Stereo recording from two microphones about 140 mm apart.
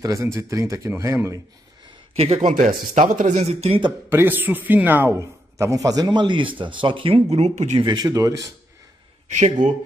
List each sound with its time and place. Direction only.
0.0 s speech: 20° right (ahead or behind)
2.1 s speech: 45° right (ahead or behind)
2.4 s speech: 75° right (ahead or behind); by 3.8 s 50° right (ahead or behind)
4.1 s a man's voice: 15° right (ahead or behind); by 7.8 s 55° right (ahead or behind)
7.8 s speech: 30° right (ahead or behind)
9.3 s speech: 55° right (ahead or behind)